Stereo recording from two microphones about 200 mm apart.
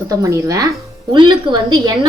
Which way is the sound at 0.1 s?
15° right (ahead or behind).